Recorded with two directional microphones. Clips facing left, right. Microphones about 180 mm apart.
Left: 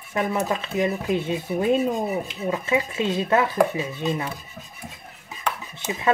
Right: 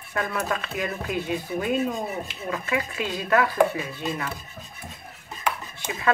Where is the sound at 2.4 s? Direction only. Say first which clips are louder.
Left 4 dB; 20° left (ahead or behind).